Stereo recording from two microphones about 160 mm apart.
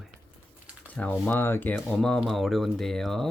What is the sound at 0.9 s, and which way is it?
Speech, 10° left (ahead or behind).